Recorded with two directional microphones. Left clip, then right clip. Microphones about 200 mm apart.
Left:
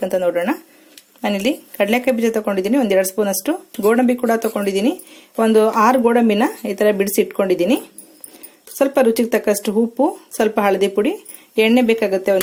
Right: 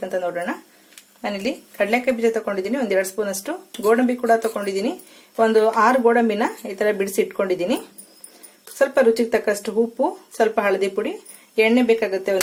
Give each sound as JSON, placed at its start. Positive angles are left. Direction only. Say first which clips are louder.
{"t": 0.0, "sound": "speech", "louder": "left 6 dB", "side_deg": 35}
{"t": 8.8, "sound": "speech", "louder": "left 2 dB", "side_deg": 40}